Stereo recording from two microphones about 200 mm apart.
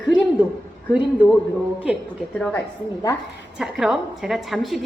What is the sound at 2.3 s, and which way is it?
A woman's voice, 5° left (ahead or behind).